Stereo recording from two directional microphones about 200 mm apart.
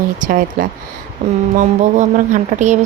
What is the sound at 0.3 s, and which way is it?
Speech, 45° right (ahead or behind).